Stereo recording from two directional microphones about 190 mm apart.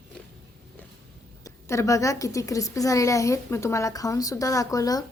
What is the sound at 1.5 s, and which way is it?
A woman's voice, 15° left (ahead or behind).